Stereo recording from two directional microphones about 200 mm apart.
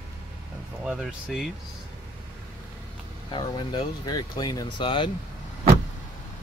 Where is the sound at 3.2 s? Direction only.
25° left (ahead or behind).